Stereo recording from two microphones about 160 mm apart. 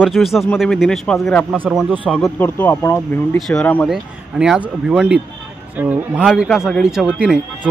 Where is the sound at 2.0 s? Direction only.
Centre (ahead or behind).